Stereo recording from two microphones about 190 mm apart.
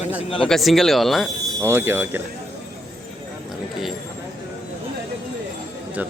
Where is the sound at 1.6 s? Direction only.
10° right (ahead or behind).